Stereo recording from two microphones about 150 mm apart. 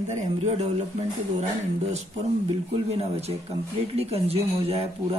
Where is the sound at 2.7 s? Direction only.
45° right (ahead or behind).